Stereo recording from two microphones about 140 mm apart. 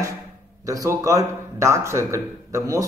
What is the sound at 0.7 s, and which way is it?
A man's voice, 25° right (ahead or behind).